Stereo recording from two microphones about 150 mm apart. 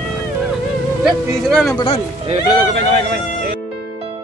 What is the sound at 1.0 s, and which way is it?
Speech, centre (ahead or behind).